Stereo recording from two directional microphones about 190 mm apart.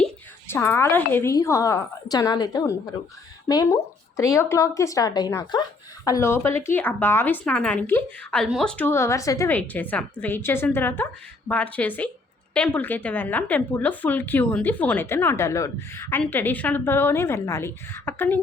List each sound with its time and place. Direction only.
0.0 s speech: 10° left (ahead or behind)